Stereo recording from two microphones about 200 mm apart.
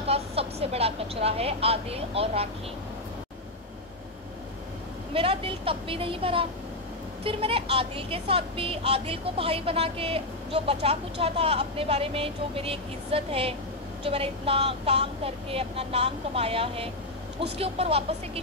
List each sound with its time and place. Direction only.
0.0 s vehicle: 30° right (ahead or behind)
5.1 s speech: 25° right (ahead or behind)